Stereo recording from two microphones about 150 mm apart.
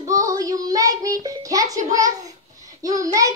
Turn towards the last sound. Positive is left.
turn(degrees=-25)  # may be behind; listen again after turning